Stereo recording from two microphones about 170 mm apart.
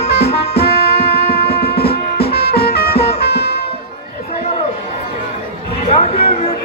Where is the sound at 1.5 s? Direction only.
65° left (ahead or behind).